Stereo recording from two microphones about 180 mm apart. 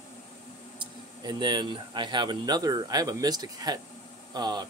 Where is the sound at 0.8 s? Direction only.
25° right (ahead or behind).